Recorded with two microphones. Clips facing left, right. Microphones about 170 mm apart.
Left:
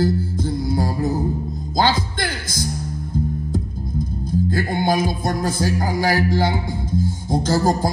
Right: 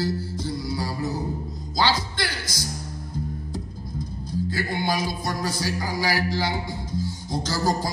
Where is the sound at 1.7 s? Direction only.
50° left (ahead or behind).